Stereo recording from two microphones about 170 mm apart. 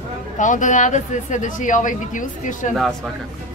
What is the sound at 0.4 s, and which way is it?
Speech, 50° left (ahead or behind).